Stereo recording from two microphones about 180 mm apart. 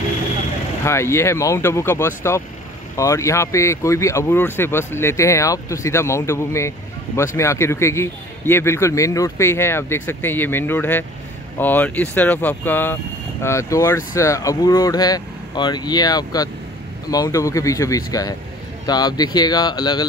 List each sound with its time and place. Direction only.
0.8 s speech: 15° left (ahead or behind)